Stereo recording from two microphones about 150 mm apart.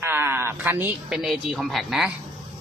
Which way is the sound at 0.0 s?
15° right (ahead or behind).